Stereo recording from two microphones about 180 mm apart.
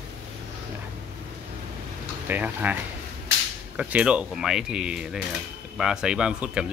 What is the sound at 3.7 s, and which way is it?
Speech, 10° right (ahead or behind).